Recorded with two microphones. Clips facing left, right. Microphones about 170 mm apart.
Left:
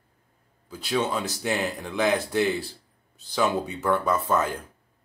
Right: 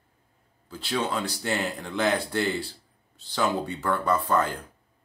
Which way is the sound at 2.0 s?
15° left (ahead or behind).